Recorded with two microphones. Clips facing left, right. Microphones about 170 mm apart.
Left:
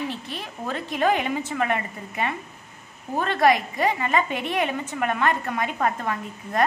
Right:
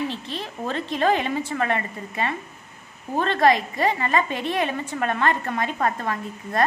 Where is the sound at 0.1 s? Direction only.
15° left (ahead or behind).